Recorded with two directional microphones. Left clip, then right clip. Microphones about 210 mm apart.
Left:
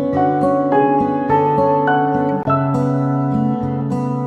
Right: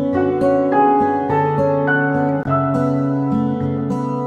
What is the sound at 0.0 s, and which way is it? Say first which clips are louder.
Music: left 1 dB; centre (ahead or behind).